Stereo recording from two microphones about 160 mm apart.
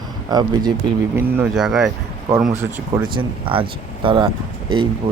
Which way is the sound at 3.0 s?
30° right (ahead or behind).